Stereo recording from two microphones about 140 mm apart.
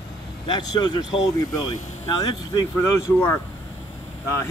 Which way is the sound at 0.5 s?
30° left (ahead or behind).